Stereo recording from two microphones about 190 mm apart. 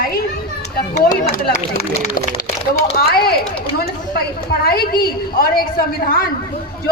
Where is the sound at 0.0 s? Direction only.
50° left (ahead or behind).